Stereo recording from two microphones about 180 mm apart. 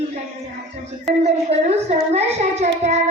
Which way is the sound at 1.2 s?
35° right (ahead or behind).